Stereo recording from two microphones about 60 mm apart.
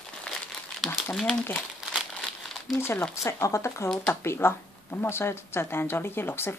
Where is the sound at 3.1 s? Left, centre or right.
Left.